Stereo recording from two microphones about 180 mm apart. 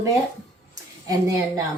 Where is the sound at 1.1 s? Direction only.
20° right (ahead or behind).